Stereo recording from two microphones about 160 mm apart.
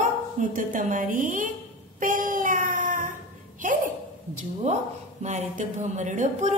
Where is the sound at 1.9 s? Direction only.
55° right (ahead or behind).